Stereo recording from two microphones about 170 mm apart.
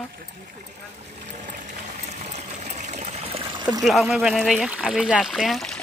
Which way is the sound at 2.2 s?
40° right (ahead or behind).